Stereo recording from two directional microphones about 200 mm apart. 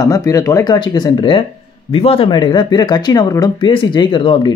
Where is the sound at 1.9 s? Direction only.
30° left (ahead or behind).